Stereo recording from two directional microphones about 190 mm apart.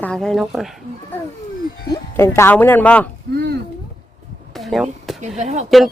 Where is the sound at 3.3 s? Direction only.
60° right (ahead or behind).